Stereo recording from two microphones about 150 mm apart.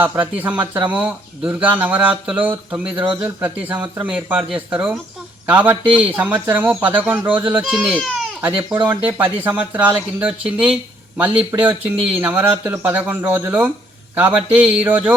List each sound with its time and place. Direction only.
0.0 s speech: 10° right (ahead or behind)